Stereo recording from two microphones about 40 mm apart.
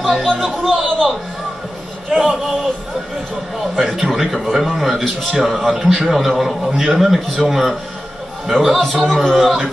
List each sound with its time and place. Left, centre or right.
0.0 s a man's voice: centre
2.1 s a man's voice: centre
3.8 s a man's voice: centre